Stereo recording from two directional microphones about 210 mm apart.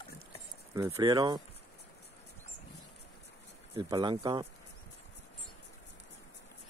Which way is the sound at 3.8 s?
20° right (ahead or behind).